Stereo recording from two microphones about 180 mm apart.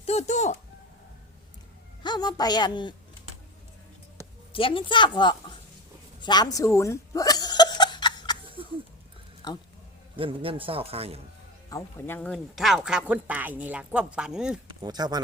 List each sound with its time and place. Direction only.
0.0 s speech: 35° left (ahead or behind)
2.0 s a woman's voice: 25° left (ahead or behind)
4.5 s a woman's voice: 30° left (ahead or behind)
6.2 s chuckle: 25° left (ahead or behind)
9.4 s speech: 25° left (ahead or behind)
10.2 s a man's voice: 30° right (ahead or behind)
11.7 s speech: 15° left (ahead or behind); by 14.6 s 5° right (ahead or behind)
14.8 s speech: 20° right (ahead or behind)